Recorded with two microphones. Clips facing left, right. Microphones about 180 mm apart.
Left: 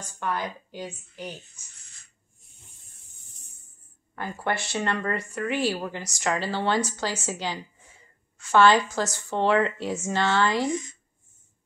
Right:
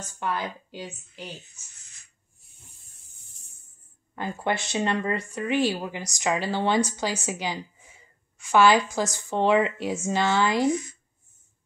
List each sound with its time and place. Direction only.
0.2 s speech: 10° right (ahead or behind)
0.7 s a woman's voice: 15° left (ahead or behind)
4.1 s speech: 20° right (ahead or behind)